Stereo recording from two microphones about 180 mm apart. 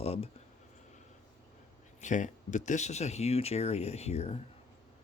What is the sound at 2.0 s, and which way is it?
Speech, 45° left (ahead or behind).